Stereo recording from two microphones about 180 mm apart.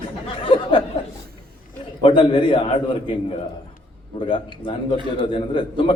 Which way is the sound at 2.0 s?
30° left (ahead or behind).